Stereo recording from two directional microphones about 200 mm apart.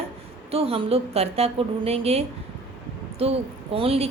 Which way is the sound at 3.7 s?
30° right (ahead or behind).